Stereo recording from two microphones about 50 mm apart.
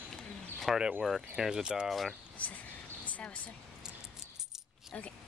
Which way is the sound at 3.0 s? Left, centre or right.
Left.